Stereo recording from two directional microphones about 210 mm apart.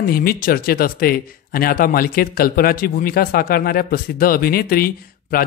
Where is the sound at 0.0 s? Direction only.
45° left (ahead or behind).